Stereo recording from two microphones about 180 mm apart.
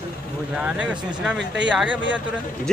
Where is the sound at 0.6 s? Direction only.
5° right (ahead or behind).